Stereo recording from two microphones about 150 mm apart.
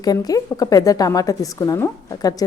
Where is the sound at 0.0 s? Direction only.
25° left (ahead or behind).